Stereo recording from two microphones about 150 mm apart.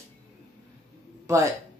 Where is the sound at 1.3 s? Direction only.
20° right (ahead or behind).